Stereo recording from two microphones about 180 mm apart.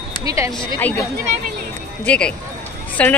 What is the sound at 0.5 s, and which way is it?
Speech, 10° left (ahead or behind).